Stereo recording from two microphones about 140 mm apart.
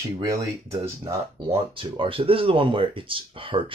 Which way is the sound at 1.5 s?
40° right (ahead or behind).